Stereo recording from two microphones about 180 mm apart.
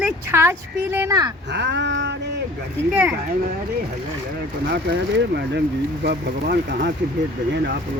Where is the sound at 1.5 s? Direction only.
70° right (ahead or behind).